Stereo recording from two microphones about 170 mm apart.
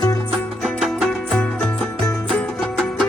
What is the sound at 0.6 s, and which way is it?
Music, centre (ahead or behind).